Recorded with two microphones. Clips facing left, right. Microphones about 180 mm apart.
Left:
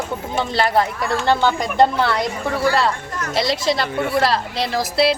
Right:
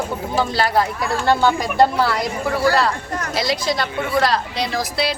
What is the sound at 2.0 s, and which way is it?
A woman's voice, 5° right (ahead or behind).